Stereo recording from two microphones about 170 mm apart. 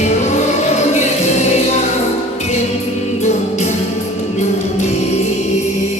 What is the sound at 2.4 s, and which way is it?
Music, 40° left (ahead or behind).